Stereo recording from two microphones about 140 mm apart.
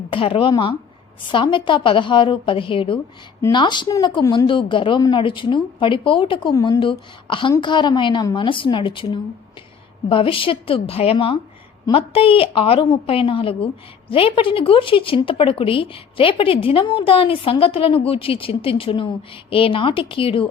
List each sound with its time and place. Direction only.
0.1 s speech: 40° left (ahead or behind)